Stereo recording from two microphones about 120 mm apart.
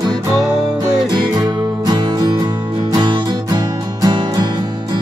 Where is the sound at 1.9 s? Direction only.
35° right (ahead or behind).